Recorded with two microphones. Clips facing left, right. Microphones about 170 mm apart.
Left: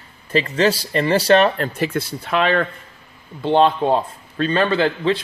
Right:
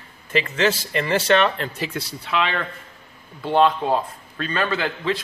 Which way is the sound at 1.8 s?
50° left (ahead or behind).